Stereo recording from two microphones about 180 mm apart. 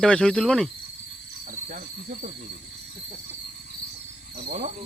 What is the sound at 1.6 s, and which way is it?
Cricket, 45° right (ahead or behind).